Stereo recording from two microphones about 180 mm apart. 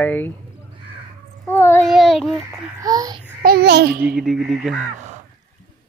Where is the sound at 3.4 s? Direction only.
60° right (ahead or behind).